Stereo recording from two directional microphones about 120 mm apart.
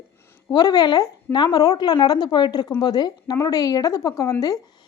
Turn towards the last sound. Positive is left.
turn(degrees=30)  # may be behind; listen again after turning